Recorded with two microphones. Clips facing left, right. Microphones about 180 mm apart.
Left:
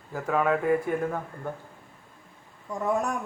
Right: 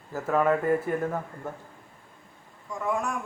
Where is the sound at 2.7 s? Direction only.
35° left (ahead or behind).